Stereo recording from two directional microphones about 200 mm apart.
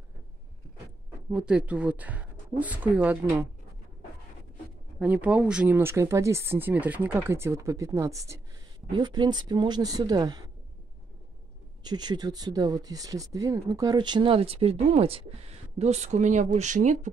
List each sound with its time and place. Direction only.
1.3 s speech: 5° right (ahead or behind)
4.9 s speech: 5° right (ahead or behind)
11.8 s speech: 20° right (ahead or behind); by 17.1 s 40° right (ahead or behind)